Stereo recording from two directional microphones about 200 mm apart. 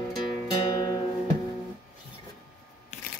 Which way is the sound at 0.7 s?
20° left (ahead or behind).